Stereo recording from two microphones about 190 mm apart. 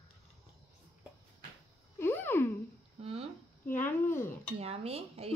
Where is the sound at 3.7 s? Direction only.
10° left (ahead or behind).